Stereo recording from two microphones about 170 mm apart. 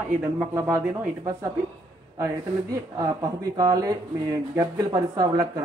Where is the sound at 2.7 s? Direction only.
20° right (ahead or behind).